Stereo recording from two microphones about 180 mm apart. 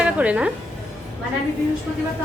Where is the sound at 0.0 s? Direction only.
5° right (ahead or behind).